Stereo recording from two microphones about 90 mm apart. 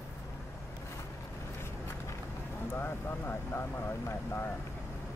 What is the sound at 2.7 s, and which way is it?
Speech, 25° left (ahead or behind).